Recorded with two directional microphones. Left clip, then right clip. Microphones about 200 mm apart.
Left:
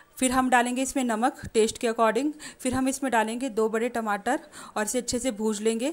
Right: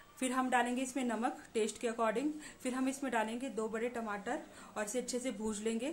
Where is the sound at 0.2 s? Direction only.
45° left (ahead or behind).